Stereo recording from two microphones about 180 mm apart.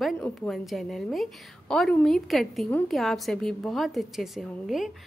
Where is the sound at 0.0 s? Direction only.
Centre (ahead or behind).